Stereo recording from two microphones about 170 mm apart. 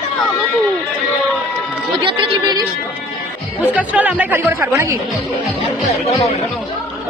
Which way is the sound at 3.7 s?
10° right (ahead or behind).